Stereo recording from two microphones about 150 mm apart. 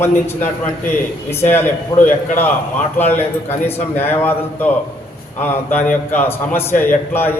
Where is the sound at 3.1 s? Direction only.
15° left (ahead or behind).